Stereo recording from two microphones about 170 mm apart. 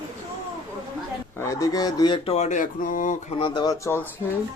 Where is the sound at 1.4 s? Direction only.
20° left (ahead or behind).